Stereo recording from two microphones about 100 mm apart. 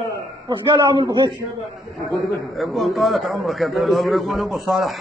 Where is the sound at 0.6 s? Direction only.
50° right (ahead or behind).